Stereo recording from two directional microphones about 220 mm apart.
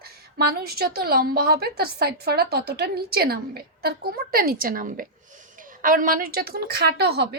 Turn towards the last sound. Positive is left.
turn(degrees=-45)  # may be behind; listen again after turning